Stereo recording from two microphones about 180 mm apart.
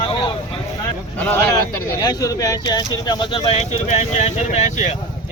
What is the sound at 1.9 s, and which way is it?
Speech, 20° left (ahead or behind).